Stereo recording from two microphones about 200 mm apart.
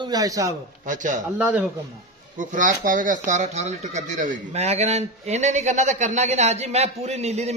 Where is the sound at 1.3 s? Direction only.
5° right (ahead or behind).